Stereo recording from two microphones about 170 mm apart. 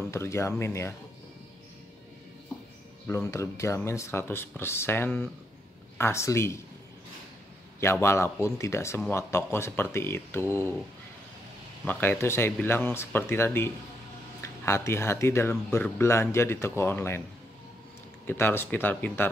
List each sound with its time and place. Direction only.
0.1 s speech: 15° left (ahead or behind)
3.1 s speech: 15° left (ahead or behind)
7.8 s speech: 15° left (ahead or behind)
11.8 s speech: 10° left (ahead or behind)
18.2 s speech: 10° left (ahead or behind)